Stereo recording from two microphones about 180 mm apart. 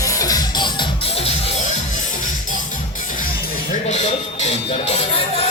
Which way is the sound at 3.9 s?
35° left (ahead or behind).